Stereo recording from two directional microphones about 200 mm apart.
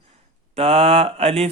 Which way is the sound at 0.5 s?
30° right (ahead or behind).